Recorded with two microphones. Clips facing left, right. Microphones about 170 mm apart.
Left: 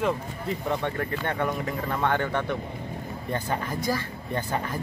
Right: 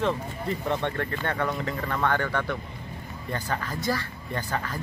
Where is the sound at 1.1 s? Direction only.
15° left (ahead or behind).